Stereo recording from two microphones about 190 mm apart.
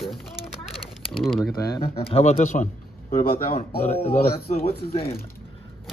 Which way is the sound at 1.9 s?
30° left (ahead or behind).